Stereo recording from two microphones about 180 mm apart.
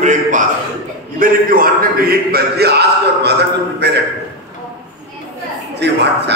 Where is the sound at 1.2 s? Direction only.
50° right (ahead or behind); by 4.0 s 70° right (ahead or behind).